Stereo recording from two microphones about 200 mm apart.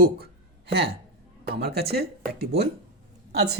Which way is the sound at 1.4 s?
50° right (ahead or behind).